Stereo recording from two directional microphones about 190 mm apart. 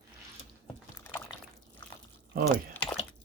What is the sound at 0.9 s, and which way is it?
Liquid, 10° left (ahead or behind).